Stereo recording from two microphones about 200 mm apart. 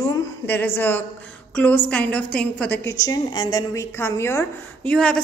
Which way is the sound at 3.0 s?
20° left (ahead or behind).